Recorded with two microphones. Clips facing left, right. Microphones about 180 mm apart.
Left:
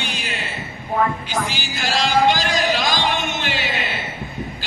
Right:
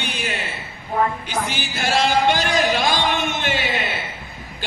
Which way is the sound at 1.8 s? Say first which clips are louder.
Even; 55° right (ahead or behind).